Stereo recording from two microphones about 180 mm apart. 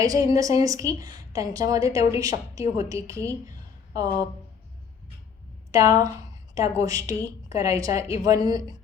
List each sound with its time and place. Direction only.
0.0 s a woman's voice: 20° right (ahead or behind)
3.4 s a sound: 20° right (ahead or behind)
5.7 s a woman's voice: 20° right (ahead or behind)